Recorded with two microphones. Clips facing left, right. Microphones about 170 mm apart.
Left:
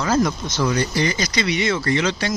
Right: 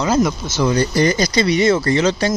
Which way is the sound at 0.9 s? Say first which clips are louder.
Right 6 dB; 45° right (ahead or behind).